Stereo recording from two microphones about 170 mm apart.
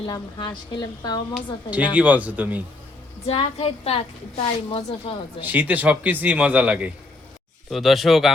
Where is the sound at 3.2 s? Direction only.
35° left (ahead or behind).